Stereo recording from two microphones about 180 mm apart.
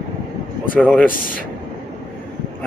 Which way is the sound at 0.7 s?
10° left (ahead or behind).